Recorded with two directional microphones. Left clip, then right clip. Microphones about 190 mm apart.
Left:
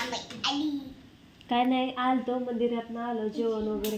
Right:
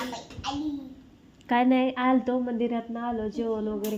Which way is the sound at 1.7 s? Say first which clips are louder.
Right 3 dB; 20° right (ahead or behind).